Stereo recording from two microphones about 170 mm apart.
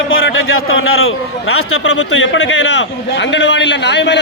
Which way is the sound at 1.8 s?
90° left.